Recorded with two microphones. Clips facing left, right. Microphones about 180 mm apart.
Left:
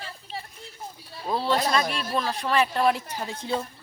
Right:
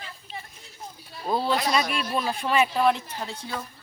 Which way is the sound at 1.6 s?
35° left (ahead or behind).